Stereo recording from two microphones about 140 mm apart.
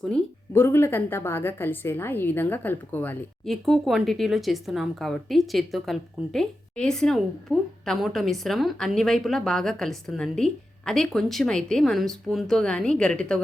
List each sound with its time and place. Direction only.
0.5 s a woman's voice: 15° left (ahead or behind)
3.4 s speech: centre (ahead or behind)